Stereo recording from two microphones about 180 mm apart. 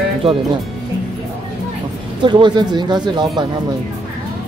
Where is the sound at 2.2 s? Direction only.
25° right (ahead or behind).